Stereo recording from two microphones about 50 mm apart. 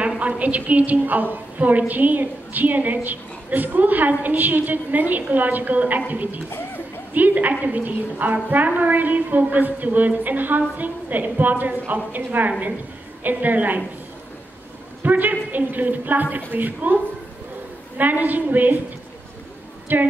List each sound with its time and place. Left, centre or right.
0.2 s a woman's voice: right
15.0 s a woman's voice: right
19.9 s a woman's voice: right